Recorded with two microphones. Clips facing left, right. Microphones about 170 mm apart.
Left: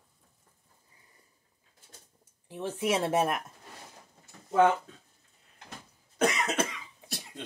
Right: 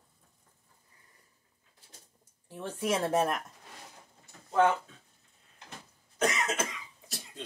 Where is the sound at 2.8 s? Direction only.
10° left (ahead or behind).